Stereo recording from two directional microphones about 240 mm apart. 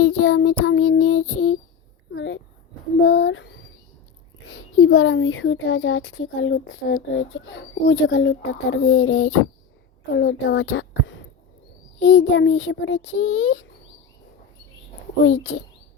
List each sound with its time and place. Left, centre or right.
0.0 s child singing: left
2.1 s a sound: left
4.4 s speech: left
15.2 s speech: left